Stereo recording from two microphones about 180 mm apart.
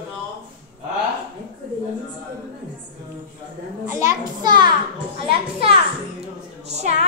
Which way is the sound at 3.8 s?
15° right (ahead or behind).